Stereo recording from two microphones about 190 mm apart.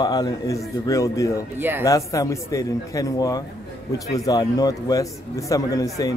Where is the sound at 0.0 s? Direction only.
20° left (ahead or behind).